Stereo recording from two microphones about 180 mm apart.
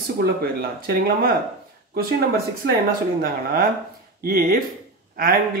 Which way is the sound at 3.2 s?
55° right (ahead or behind).